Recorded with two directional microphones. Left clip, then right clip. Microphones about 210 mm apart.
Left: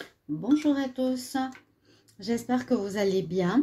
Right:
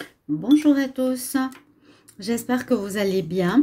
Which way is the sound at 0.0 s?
15° right (ahead or behind).